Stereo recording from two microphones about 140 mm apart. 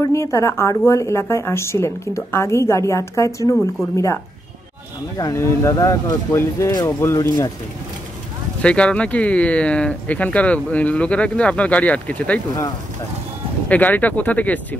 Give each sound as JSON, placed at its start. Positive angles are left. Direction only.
{"t": 0.0, "sound": "speech", "side_deg": 20}
{"t": 8.6, "sound": "speech", "side_deg": 10}
{"t": 13.7, "sound": "speech", "side_deg": 10}